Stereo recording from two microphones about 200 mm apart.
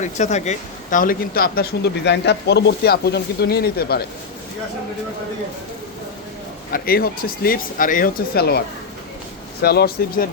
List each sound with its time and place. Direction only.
0.0 s speech: 35° left (ahead or behind); by 4.0 s 50° left (ahead or behind)
6.7 s speech: 50° left (ahead or behind)